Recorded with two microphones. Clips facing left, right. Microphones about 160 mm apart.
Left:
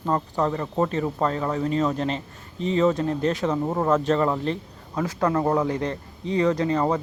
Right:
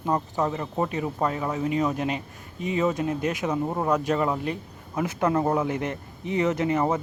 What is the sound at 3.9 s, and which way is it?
A man's voice, 15° right (ahead or behind).